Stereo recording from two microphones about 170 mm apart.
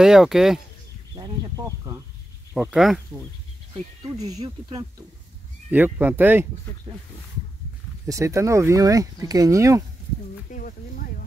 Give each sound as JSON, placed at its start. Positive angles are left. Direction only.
{"t": 0.0, "sound": "speech", "side_deg": 0}
{"t": 1.1, "sound": "a sound", "side_deg": -20}
{"t": 2.6, "sound": "speech", "side_deg": -5}
{"t": 5.7, "sound": "speech", "side_deg": -10}
{"t": 8.1, "sound": "speech", "side_deg": -20}
{"t": 10.5, "sound": "speech", "side_deg": 55}